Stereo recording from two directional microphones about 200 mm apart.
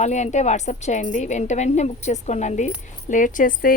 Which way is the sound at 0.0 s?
35° left (ahead or behind).